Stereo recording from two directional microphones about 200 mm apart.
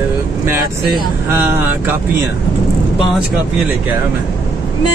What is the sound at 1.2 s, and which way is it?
Speech, 10° right (ahead or behind).